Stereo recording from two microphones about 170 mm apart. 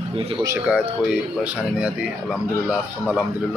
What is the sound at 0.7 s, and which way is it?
A man's voice, 5° right (ahead or behind).